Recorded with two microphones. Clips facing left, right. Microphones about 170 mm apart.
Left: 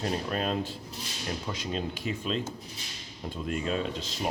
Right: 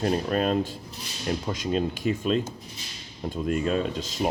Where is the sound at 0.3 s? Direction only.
45° right (ahead or behind).